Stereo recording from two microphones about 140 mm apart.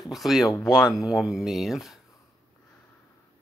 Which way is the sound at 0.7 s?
30° left (ahead or behind).